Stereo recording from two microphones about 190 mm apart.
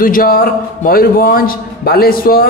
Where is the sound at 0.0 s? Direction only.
50° left (ahead or behind).